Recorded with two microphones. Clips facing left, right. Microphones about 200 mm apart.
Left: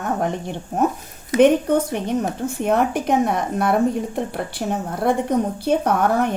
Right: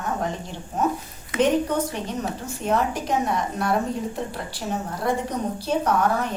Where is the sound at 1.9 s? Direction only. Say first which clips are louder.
Left 6 dB; 55° left (ahead or behind).